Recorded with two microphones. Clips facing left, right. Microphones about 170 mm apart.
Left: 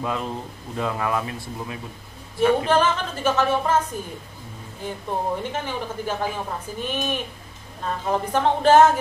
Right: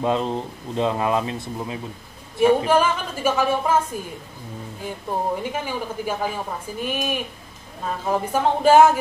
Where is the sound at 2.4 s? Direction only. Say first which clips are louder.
Right 2 dB; 10° right (ahead or behind).